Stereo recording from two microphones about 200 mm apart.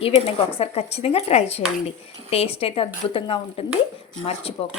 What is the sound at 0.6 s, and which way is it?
Speech, 30° left (ahead or behind).